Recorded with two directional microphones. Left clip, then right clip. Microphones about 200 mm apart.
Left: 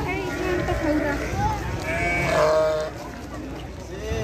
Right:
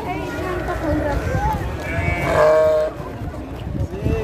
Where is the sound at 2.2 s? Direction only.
Centre (ahead or behind).